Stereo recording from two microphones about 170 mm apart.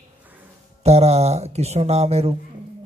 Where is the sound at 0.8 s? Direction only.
40° right (ahead or behind).